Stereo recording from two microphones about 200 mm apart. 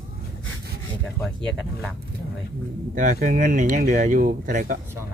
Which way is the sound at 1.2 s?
5° left (ahead or behind).